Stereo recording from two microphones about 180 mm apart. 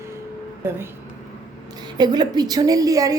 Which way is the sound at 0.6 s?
15° right (ahead or behind).